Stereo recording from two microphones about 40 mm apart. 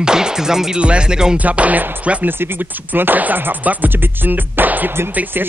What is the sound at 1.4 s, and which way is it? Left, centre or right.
Speech, right.